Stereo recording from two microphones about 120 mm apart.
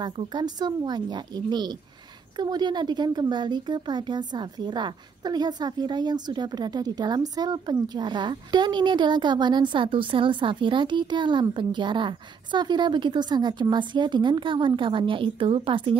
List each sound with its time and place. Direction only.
0.0 s speech: 40° right (ahead or behind)